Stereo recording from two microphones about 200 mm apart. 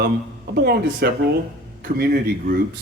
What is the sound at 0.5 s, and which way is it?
A man's voice, 50° right (ahead or behind).